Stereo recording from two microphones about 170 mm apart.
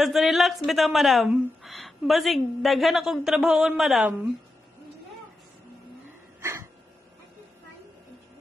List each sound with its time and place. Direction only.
0.0 s a woman's voice: centre (ahead or behind)
6.0 s dog: 15° right (ahead or behind)